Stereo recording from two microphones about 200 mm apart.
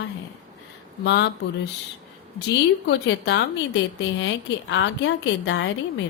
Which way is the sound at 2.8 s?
60° left (ahead or behind).